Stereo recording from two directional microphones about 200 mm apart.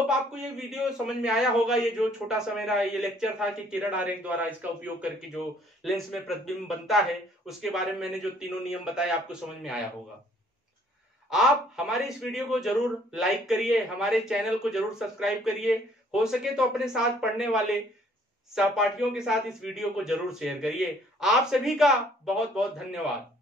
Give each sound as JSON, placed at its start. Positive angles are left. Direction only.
{"t": 0.1, "sound": "a man's voice", "side_deg": -5}
{"t": 11.2, "sound": "a man's voice", "side_deg": 0}